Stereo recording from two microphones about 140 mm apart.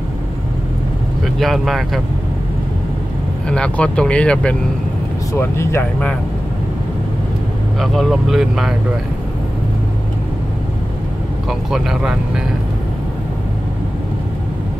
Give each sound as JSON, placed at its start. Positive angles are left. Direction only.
{"t": 1.2, "sound": "speech", "side_deg": 0}
{"t": 3.4, "sound": "speech", "side_deg": 5}
{"t": 5.3, "sound": "speech", "side_deg": 20}
{"t": 7.8, "sound": "speech", "side_deg": 0}
{"t": 11.4, "sound": "speech", "side_deg": -5}